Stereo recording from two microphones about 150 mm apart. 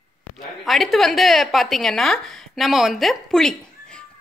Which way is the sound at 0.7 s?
Centre (ahead or behind).